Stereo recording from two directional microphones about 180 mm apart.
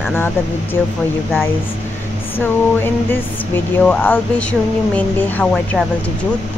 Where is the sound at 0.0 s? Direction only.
10° left (ahead or behind).